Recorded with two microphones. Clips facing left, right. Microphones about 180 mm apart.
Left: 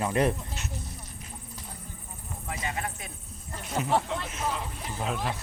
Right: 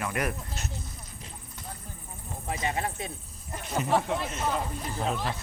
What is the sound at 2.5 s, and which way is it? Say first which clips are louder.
Speech: right 4 dB; 25° right (ahead or behind).